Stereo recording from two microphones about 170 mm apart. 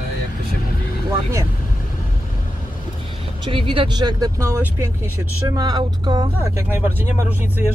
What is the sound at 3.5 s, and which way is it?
Speech, 30° right (ahead or behind).